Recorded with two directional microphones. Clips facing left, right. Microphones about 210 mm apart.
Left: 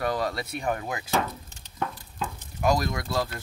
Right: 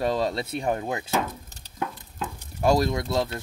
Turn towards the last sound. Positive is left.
turn(degrees=-25)  # may be behind; listen again after turning